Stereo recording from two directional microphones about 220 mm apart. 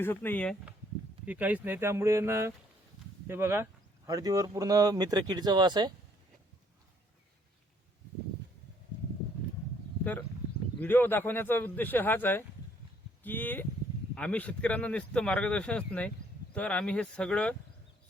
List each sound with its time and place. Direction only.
0.0 s speech: 10° left (ahead or behind)
1.2 s speech: 5° right (ahead or behind)
10.0 s a man's voice: 10° left (ahead or behind)